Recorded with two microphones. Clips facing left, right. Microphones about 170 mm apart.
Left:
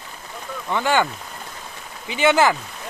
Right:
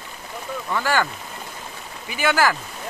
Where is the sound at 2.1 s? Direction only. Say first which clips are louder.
Left 3 dB; 25° left (ahead or behind).